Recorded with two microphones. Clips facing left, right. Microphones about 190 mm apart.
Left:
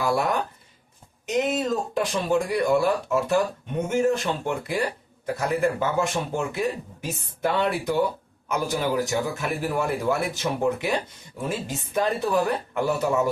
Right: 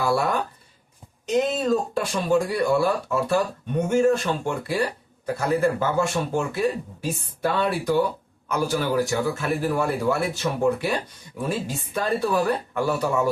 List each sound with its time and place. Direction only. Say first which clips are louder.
0.0 s speech: right 1 dB; 20° left (ahead or behind)
1.3 s speech: right 3 dB; 20° left (ahead or behind)